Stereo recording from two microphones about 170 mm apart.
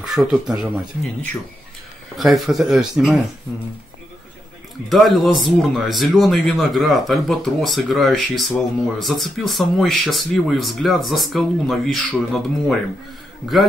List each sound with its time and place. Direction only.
0.0 s speech: centre (ahead or behind)
2.1 s speech: centre (ahead or behind)
4.8 s speech: centre (ahead or behind)